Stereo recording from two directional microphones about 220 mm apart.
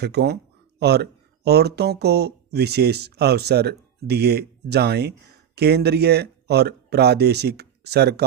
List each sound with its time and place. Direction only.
0.0 s speech: 45° right (ahead or behind)